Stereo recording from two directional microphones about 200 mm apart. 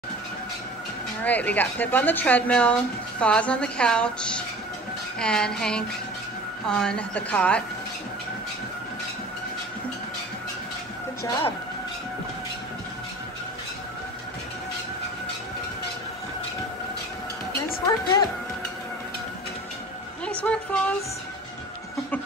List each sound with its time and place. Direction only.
1.2 s a woman's voice: 10° left (ahead or behind)
17.7 s a woman's voice: 20° left (ahead or behind)
20.2 s a sound: 5° left (ahead or behind)